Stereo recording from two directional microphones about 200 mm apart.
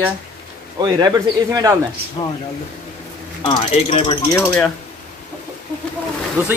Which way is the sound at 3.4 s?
25° left (ahead or behind).